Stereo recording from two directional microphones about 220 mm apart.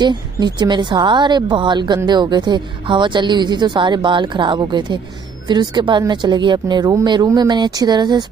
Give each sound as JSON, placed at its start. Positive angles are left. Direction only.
{"t": 0.0, "sound": "a woman's voice", "side_deg": -20}